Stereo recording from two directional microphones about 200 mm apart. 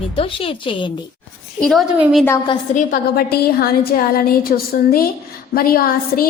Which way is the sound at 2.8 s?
45° left (ahead or behind).